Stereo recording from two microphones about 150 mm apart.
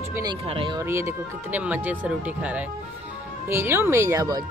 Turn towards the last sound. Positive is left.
turn(degrees=-25)  # may be behind; listen again after turning